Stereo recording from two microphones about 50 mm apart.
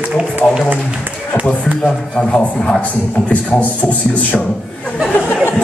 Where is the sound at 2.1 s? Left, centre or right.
Centre.